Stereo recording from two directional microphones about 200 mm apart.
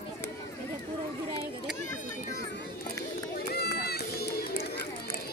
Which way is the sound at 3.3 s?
50° left (ahead or behind).